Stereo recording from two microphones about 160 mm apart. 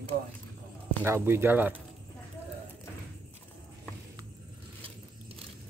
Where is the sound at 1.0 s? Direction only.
15° right (ahead or behind).